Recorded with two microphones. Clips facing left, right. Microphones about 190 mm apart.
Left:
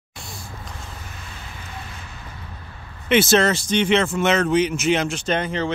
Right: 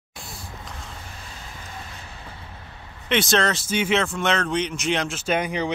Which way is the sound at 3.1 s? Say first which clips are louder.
Left 5 dB; 5° left (ahead or behind).